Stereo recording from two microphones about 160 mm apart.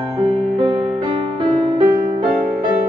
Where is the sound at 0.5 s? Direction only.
35° right (ahead or behind).